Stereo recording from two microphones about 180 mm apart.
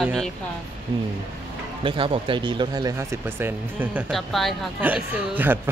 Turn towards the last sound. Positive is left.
turn(degrees=-10)  # may be behind; listen again after turning